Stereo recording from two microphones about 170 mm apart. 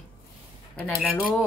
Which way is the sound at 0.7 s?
60° left (ahead or behind).